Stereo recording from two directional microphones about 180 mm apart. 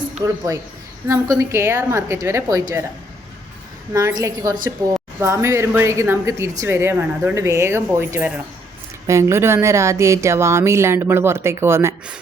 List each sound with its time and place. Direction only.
1.0 s speech: 15° right (ahead or behind)
3.9 s a woman's voice: 20° right (ahead or behind)